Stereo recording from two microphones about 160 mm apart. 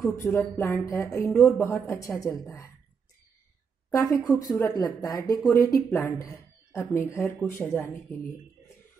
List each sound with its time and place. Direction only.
0.1 s speech: 15° left (ahead or behind)
3.9 s speech: 20° left (ahead or behind)